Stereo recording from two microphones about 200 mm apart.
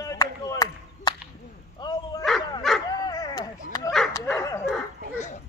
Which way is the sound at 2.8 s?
20° left (ahead or behind).